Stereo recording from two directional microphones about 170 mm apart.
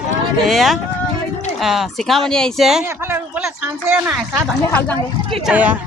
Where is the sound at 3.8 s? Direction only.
10° right (ahead or behind).